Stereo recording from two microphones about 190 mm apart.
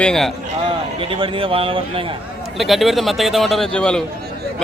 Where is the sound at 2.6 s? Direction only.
Centre (ahead or behind).